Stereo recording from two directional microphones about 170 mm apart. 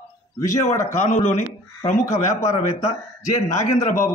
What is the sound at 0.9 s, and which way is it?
Speech, 45° left (ahead or behind).